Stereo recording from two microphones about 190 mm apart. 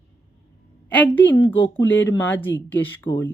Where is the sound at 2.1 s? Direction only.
10° left (ahead or behind).